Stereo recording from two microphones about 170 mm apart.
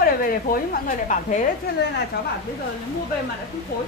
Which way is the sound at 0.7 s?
50° left (ahead or behind).